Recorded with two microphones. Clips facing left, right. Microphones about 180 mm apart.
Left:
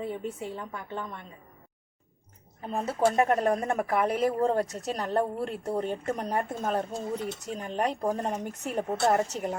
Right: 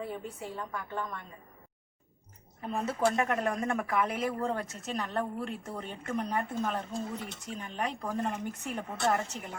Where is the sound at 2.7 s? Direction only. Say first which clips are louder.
Left 4 dB; 35° left (ahead or behind).